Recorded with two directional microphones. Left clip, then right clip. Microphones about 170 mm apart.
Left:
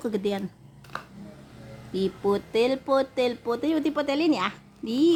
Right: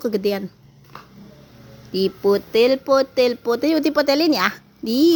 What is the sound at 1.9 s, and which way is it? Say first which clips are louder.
Speech: right 7 dB; 10° right (ahead or behind).